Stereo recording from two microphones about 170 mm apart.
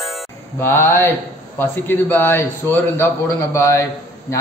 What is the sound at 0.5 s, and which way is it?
Speech, 15° left (ahead or behind).